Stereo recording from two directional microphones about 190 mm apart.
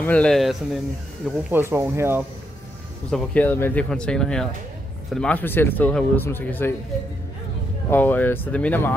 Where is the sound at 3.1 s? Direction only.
10° left (ahead or behind).